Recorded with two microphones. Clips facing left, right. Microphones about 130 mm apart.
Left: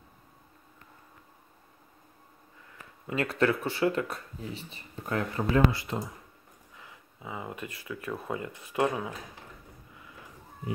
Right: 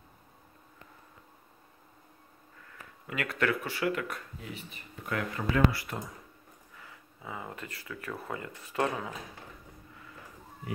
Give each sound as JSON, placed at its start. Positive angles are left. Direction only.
{"t": 3.1, "sound": "speech", "side_deg": 30}